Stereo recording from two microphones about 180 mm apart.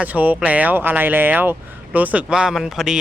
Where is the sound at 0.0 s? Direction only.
10° right (ahead or behind).